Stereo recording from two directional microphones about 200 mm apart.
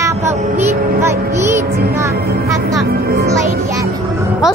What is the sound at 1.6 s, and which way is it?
Music, 50° right (ahead or behind).